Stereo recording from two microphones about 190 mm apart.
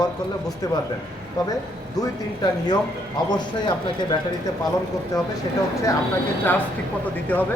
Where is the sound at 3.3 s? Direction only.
20° left (ahead or behind).